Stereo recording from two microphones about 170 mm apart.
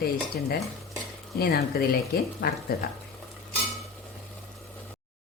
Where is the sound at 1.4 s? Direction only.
65° left (ahead or behind).